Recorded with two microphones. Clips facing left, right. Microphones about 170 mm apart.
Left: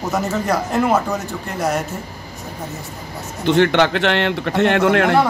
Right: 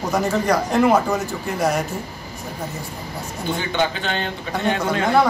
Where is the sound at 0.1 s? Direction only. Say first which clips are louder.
Right 1 dB; 5° left (ahead or behind).